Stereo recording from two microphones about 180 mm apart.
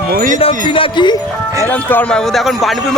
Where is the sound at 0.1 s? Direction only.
50° right (ahead or behind).